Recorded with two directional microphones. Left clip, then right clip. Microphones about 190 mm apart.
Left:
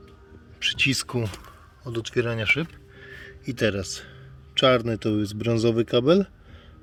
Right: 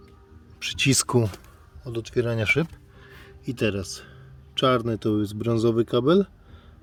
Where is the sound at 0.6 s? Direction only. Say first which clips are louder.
Left 1 dB; 45° right (ahead or behind).